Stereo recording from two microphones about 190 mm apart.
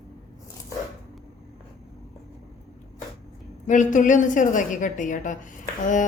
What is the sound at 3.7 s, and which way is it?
A woman's voice, 40° left (ahead or behind).